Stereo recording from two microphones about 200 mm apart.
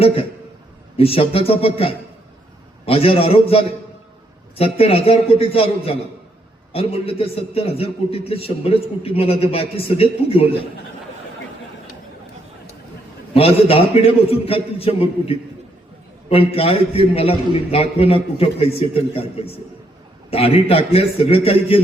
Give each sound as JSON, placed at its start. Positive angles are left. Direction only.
{"t": 0.9, "sound": "a man's voice", "side_deg": 30}
{"t": 13.3, "sound": "a man's voice", "side_deg": 30}